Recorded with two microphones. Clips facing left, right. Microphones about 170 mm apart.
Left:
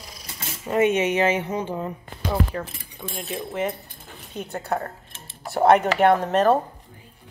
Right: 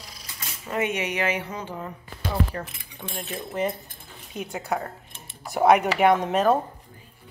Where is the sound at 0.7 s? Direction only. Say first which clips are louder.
Left 7 dB; 25° left (ahead or behind).